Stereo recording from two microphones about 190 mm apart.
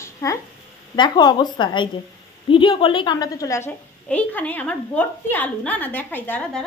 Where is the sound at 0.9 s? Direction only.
25° left (ahead or behind).